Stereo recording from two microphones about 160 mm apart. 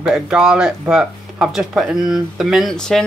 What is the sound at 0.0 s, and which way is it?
Speech, 5° right (ahead or behind).